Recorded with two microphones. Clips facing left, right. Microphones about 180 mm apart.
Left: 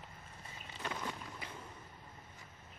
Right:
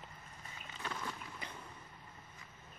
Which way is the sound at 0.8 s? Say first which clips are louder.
Left 2 dB; 15° left (ahead or behind).